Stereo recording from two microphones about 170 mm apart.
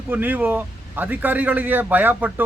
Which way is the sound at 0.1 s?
10° right (ahead or behind).